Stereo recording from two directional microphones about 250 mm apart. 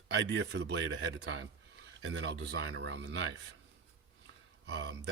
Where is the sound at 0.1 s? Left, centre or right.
Right.